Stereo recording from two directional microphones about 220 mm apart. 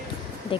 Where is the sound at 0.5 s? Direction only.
25° left (ahead or behind).